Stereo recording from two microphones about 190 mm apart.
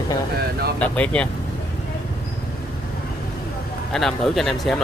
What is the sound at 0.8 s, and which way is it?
Speech, 5° left (ahead or behind).